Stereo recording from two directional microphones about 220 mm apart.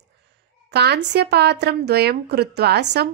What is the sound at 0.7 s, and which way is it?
A woman's voice, 50° right (ahead or behind).